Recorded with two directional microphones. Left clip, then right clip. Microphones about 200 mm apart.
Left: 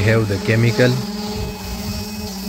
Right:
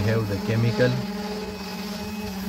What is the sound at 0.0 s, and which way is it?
Speech, 15° left (ahead or behind).